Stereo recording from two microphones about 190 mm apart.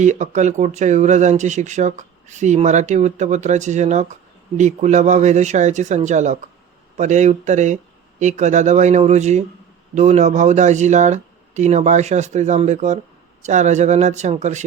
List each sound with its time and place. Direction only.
0.0 s speech: 40° right (ahead or behind)